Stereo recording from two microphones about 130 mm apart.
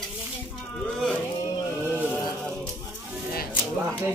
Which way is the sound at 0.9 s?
5° left (ahead or behind).